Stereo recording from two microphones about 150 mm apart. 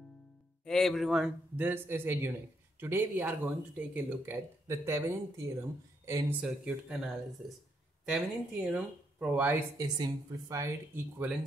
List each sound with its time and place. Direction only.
0.7 s speech: 5° left (ahead or behind)
1.6 s speech: 15° right (ahead or behind)
6.4 s speech: 5° right (ahead or behind)
9.8 s speech: 25° right (ahead or behind)